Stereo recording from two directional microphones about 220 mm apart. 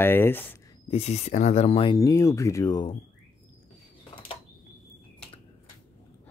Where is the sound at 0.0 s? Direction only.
10° left (ahead or behind).